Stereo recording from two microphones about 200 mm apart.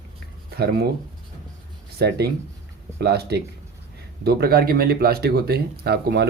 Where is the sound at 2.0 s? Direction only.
55° right (ahead or behind).